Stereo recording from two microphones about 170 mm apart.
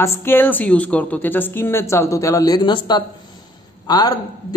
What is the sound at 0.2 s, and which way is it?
A man's voice, 10° left (ahead or behind).